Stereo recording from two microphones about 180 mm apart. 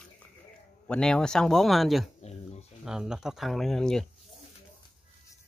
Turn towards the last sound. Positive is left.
turn(degrees=5)  # may be behind; listen again after turning